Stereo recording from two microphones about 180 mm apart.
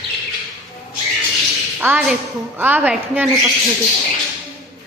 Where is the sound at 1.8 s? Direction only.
10° right (ahead or behind).